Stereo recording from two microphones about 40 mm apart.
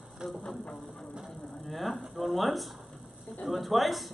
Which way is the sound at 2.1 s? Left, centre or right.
Centre.